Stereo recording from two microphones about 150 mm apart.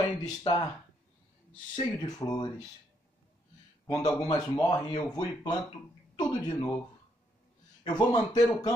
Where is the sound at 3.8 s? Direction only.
20° left (ahead or behind).